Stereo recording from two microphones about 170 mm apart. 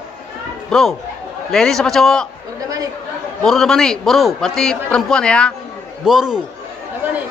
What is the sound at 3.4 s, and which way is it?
A man's voice, centre (ahead or behind).